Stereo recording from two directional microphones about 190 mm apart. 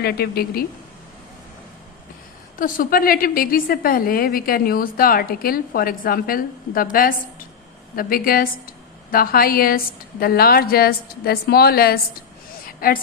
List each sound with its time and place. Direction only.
0.0 s speech: 55° left (ahead or behind)
2.6 s a woman's voice: 50° left (ahead or behind)
12.6 s a sound: 50° left (ahead or behind)